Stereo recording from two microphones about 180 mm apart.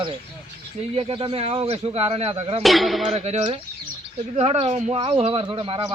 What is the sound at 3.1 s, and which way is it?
Speech, 35° right (ahead or behind).